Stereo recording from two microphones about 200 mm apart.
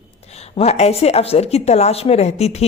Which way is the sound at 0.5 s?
30° left (ahead or behind).